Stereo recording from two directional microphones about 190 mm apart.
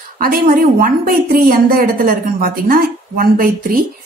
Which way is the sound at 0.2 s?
50° right (ahead or behind).